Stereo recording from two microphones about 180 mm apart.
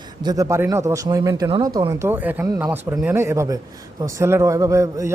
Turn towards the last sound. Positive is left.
turn(degrees=-15)  # may be behind; listen again after turning